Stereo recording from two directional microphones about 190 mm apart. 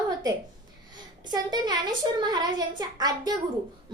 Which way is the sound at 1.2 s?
20° right (ahead or behind).